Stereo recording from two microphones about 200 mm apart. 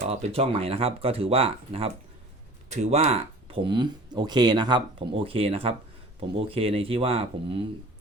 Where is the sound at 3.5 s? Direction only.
25° right (ahead or behind).